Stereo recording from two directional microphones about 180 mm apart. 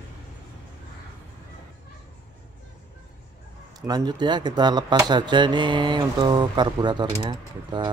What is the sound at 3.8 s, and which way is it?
Speech, 20° right (ahead or behind).